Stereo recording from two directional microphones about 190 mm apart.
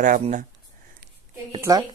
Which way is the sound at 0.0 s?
45° right (ahead or behind).